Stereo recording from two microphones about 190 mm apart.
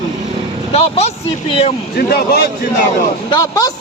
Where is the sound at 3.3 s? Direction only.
20° left (ahead or behind).